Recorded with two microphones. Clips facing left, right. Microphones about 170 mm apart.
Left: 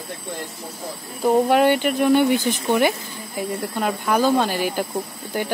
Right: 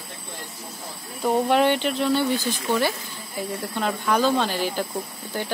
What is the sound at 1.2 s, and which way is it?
Speech, 10° left (ahead or behind).